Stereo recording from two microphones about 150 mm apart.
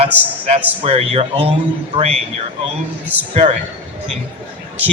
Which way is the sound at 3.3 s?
45° right (ahead or behind).